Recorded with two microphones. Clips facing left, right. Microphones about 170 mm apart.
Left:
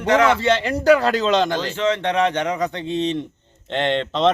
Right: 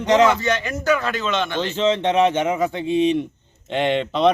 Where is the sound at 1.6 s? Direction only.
20° right (ahead or behind).